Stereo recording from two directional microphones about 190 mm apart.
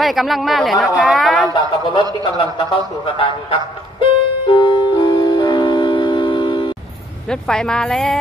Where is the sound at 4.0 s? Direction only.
25° left (ahead or behind).